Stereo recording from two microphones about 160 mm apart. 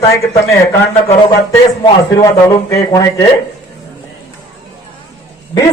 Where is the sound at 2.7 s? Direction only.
20° left (ahead or behind).